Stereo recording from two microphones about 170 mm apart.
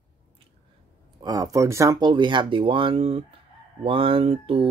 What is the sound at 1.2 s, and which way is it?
Speech, 20° right (ahead or behind).